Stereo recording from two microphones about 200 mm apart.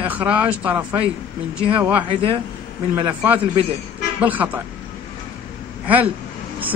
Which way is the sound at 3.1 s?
10° right (ahead or behind).